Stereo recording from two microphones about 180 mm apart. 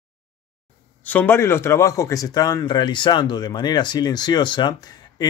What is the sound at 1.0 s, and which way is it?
Speech, 10° left (ahead or behind).